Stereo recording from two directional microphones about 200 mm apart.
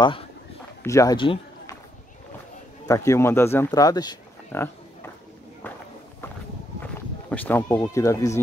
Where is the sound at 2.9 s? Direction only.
15° left (ahead or behind).